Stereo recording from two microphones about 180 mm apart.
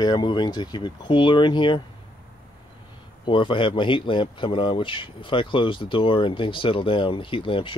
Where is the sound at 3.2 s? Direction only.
25° left (ahead or behind).